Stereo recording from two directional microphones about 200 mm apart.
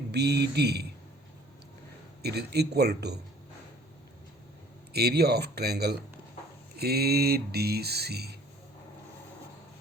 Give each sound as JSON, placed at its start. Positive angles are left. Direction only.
{"t": 0.1, "sound": "speech", "side_deg": -55}
{"t": 2.2, "sound": "speech", "side_deg": -55}
{"t": 4.9, "sound": "speech", "side_deg": -55}